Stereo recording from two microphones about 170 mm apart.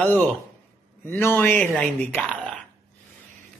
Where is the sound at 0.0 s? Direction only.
10° left (ahead or behind).